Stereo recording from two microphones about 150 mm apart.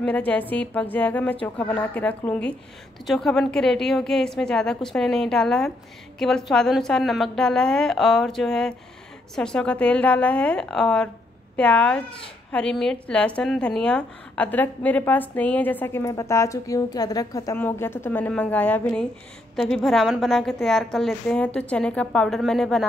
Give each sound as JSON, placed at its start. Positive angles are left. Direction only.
{"t": 0.0, "sound": "a woman's voice", "side_deg": 10}